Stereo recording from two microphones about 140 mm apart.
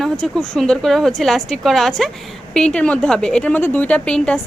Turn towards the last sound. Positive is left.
turn(degrees=5)  # may be behind; listen again after turning